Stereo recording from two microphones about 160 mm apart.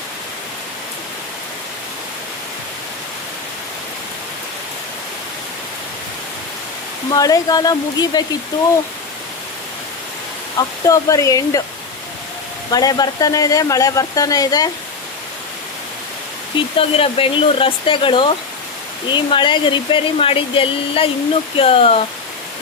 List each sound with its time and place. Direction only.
7.1 s speech: 25° left (ahead or behind)
10.8 s speech: 20° left (ahead or behind)
12.7 s speech: 25° left (ahead or behind)
16.7 s speech: 35° left (ahead or behind)